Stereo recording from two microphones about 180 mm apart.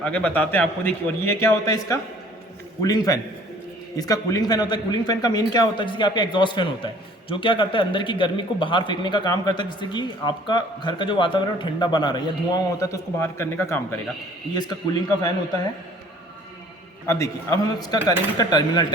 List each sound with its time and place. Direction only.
0.0 s a man's voice: 5° left (ahead or behind); by 14.8 s 25° left (ahead or behind)
17.1 s a man's voice: 20° left (ahead or behind)